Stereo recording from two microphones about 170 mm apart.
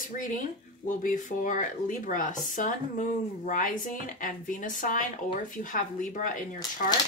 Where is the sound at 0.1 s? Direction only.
50° left (ahead or behind).